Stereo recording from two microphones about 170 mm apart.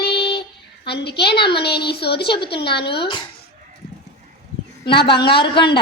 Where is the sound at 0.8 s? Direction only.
80° left.